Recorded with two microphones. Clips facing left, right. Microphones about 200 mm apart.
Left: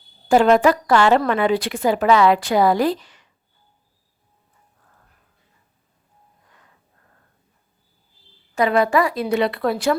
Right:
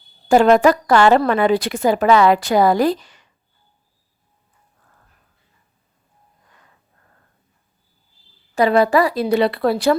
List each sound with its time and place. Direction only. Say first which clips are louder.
0.3 s a woman's voice: right 2 dB; 45° right (ahead or behind)
8.5 s a woman's voice: right 3 dB; 35° right (ahead or behind)